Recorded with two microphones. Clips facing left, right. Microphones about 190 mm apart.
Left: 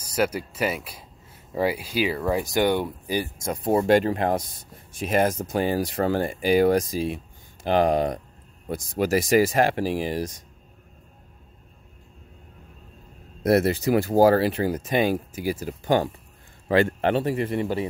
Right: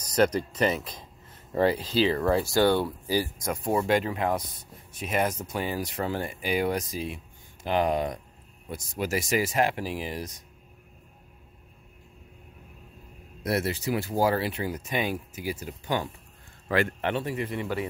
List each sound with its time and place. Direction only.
0.0 s speech: 10° left (ahead or behind); by 10.2 s 35° left (ahead or behind)
13.4 s speech: 45° left (ahead or behind)
16.6 s speech: 30° left (ahead or behind)